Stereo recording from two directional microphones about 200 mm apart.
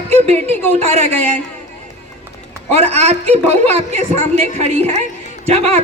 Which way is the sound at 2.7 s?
30° right (ahead or behind).